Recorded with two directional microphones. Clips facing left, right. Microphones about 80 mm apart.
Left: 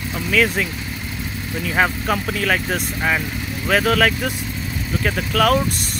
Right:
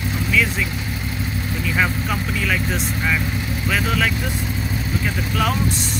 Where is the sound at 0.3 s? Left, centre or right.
Left.